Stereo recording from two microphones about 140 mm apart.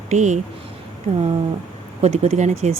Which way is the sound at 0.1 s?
60° right (ahead or behind).